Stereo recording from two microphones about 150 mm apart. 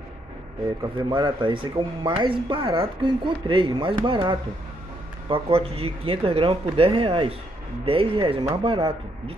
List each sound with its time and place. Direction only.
0.9 s speech: 35° right (ahead or behind)